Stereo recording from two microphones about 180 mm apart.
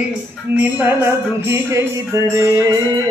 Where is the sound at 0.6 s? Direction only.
10° right (ahead or behind).